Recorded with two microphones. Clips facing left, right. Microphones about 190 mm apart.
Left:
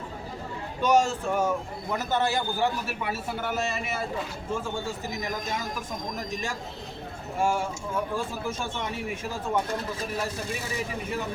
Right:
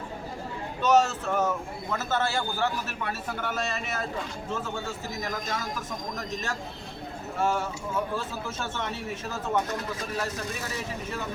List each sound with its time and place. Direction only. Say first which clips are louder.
0.8 s a man's voice: even; 10° left (ahead or behind)
10.2 s a man's voice: left 1 dB; 10° left (ahead or behind)